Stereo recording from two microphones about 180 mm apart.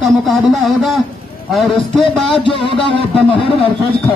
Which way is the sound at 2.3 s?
30° left (ahead or behind).